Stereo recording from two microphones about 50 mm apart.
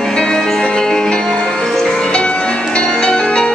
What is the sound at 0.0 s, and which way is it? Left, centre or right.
Music, centre.